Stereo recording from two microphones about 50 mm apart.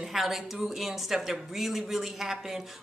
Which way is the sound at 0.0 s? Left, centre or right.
Centre.